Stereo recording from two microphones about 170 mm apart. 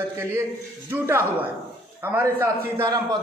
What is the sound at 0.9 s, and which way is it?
A man's voice, 15° right (ahead or behind).